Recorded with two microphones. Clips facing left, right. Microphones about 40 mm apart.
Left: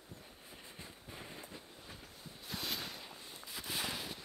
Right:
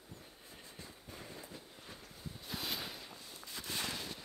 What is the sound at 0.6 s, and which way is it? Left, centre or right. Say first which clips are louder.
Train: even; left.